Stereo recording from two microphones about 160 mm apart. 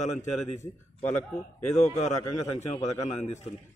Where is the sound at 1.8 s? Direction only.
45° left (ahead or behind).